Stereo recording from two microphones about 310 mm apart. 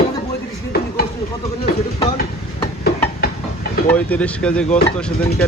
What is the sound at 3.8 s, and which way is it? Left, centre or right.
Speech, centre.